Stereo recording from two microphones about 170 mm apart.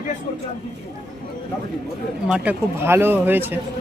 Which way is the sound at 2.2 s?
5° right (ahead or behind).